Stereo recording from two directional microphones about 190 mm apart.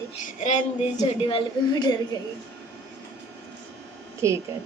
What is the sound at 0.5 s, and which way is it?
A woman's voice, 35° left (ahead or behind).